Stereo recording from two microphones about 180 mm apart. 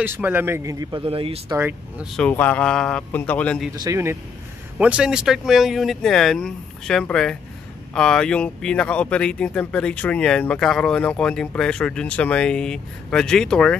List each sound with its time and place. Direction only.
0.0 s a man's voice: 10° right (ahead or behind); by 1.4 s 30° right (ahead or behind)
1.5 s a man's voice: 10° right (ahead or behind)
2.1 s speech: 10° left (ahead or behind)
3.8 s a man's voice: 15° right (ahead or behind); by 13.7 s 5° left (ahead or behind)